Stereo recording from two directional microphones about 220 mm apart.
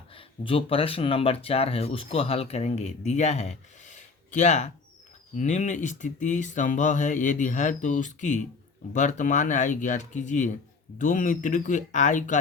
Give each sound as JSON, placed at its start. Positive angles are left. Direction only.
{"t": 0.1, "sound": "speech", "side_deg": 25}